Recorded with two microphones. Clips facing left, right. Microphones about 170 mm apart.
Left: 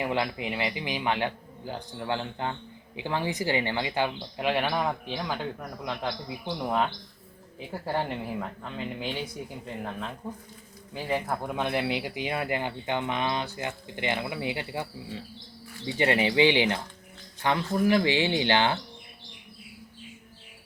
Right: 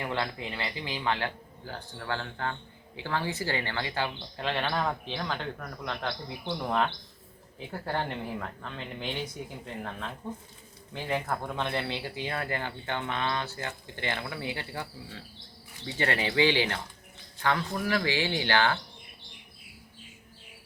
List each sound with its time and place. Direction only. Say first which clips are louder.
0.0 s a man's voice: left 4 dB; 15° left (ahead or behind)